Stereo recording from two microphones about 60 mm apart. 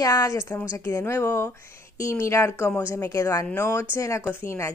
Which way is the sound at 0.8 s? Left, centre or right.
Left.